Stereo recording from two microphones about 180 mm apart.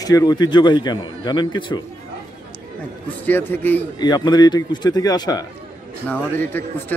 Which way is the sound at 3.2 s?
10° left (ahead or behind).